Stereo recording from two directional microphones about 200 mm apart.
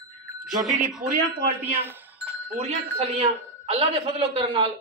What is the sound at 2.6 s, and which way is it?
A man's voice, 30° right (ahead or behind).